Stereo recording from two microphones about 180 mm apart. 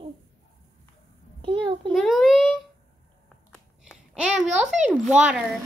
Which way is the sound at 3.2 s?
Centre (ahead or behind).